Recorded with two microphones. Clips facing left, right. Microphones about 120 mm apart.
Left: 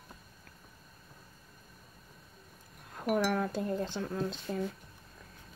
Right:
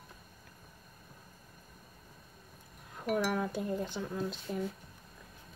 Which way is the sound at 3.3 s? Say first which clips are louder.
Left 2 dB; 10° right (ahead or behind).